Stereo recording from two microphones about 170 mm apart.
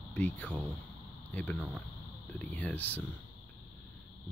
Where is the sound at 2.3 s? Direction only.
10° left (ahead or behind).